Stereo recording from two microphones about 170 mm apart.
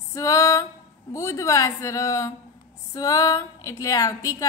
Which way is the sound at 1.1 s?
15° left (ahead or behind).